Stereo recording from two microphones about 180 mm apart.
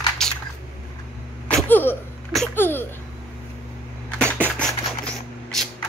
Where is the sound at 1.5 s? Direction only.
10° left (ahead or behind).